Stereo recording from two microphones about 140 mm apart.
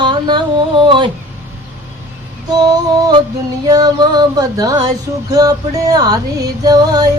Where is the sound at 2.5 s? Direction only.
30° right (ahead or behind).